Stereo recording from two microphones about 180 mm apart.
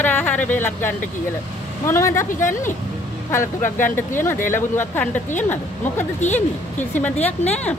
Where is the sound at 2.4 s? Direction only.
45° left (ahead or behind).